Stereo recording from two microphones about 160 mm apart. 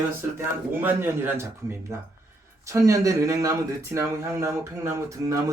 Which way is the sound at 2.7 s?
20° right (ahead or behind).